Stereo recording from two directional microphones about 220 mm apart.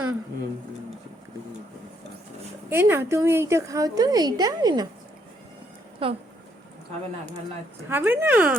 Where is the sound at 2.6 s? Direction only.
10° right (ahead or behind).